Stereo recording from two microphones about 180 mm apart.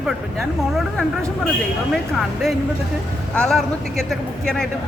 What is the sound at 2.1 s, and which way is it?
A man's voice, centre (ahead or behind).